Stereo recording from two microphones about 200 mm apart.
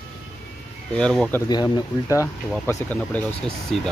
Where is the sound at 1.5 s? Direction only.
20° left (ahead or behind).